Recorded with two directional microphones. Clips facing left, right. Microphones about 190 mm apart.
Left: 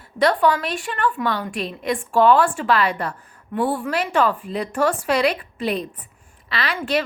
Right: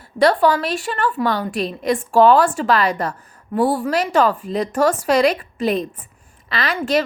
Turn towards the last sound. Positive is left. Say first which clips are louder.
# right 3 dB
turn(degrees=-45)  # may be behind; listen again after turning